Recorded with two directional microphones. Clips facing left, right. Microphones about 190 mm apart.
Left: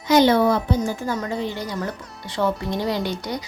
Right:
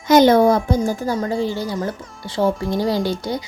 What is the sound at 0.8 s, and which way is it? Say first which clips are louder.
Speech: right 4 dB; 35° right (ahead or behind).